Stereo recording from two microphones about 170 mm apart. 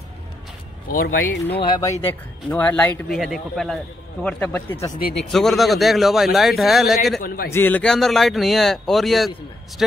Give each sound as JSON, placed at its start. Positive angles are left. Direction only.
{"t": 0.8, "sound": "a man's voice", "side_deg": 60}
{"t": 1.8, "sound": "a man's voice", "side_deg": 15}
{"t": 4.9, "sound": "a man's voice", "side_deg": 60}
{"t": 5.3, "sound": "a man's voice", "side_deg": 0}
{"t": 7.2, "sound": "a man's voice", "side_deg": 60}
{"t": 7.5, "sound": "a man's voice", "side_deg": 10}